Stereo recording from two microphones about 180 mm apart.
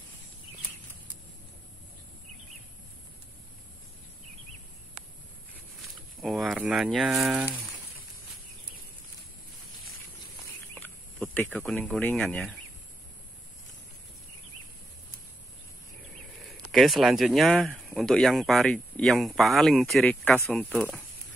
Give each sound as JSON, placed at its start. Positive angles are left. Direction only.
{"t": 6.2, "sound": "speech", "side_deg": 0}
{"t": 10.7, "sound": "chicken", "side_deg": 10}
{"t": 11.7, "sound": "speech", "side_deg": 10}
{"t": 16.4, "sound": "speech", "side_deg": 0}